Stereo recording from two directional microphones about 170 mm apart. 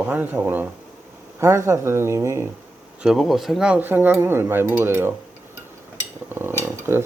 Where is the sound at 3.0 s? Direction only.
Centre (ahead or behind).